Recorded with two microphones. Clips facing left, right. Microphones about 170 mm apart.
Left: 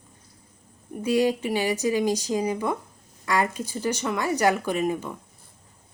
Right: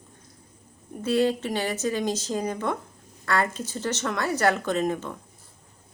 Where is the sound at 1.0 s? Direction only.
15° left (ahead or behind).